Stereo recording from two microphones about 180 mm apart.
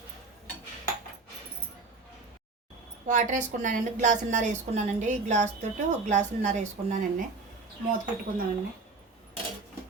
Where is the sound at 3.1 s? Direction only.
45° right (ahead or behind).